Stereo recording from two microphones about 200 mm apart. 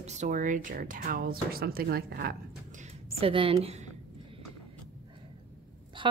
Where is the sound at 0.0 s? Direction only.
35° right (ahead or behind); by 2.3 s 50° right (ahead or behind).